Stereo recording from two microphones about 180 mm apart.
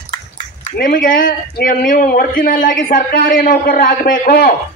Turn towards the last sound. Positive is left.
turn(degrees=50)  # may be behind; listen again after turning